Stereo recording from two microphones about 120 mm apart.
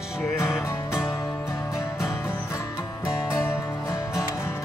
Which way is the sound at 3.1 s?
25° left (ahead or behind).